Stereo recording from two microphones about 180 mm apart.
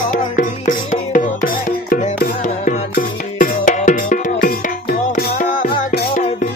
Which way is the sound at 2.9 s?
50° left (ahead or behind).